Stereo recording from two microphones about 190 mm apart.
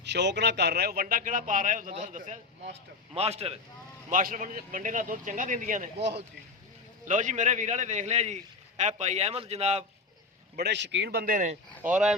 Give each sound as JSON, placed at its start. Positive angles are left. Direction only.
{"t": 0.0, "sound": "a man's voice", "side_deg": -65}
{"t": 4.1, "sound": "a man's voice", "side_deg": -45}
{"t": 6.0, "sound": "speech", "side_deg": -65}
{"t": 7.0, "sound": "a man's voice", "side_deg": -40}
{"t": 10.6, "sound": "speech", "side_deg": -65}
{"t": 11.8, "sound": "speech", "side_deg": -5}